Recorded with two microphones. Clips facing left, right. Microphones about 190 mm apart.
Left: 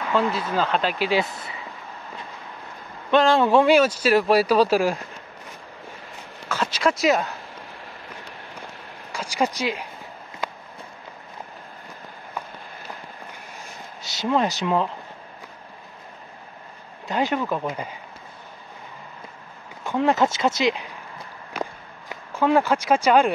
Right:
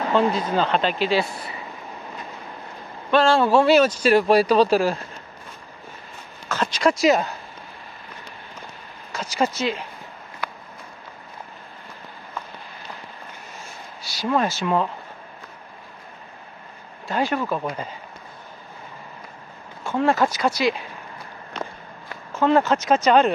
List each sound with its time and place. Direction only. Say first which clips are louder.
0.0 s speech: right 3 dB; 30° right (ahead or behind)
0.6 s speech: even; 5° left (ahead or behind)
3.1 s speech: even; 15° left (ahead or behind)
6.5 s speech: right 2 dB; 5° left (ahead or behind)
9.1 s speech: right 1 dB; 10° left (ahead or behind)
14.0 s speech: even; 20° left (ahead or behind)
17.1 s speech: even; 20° left (ahead or behind)
19.8 s speech: even; 15° left (ahead or behind)
22.1 s speech: right 1 dB; 15° left (ahead or behind)